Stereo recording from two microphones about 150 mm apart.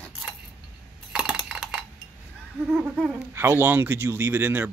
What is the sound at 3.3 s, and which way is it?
Speech, 15° right (ahead or behind).